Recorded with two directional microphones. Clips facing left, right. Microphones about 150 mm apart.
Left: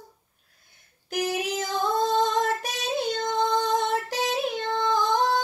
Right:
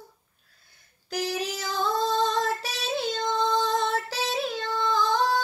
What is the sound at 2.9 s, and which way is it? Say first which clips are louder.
Female singing: left 1 dB; 20° left (ahead or behind).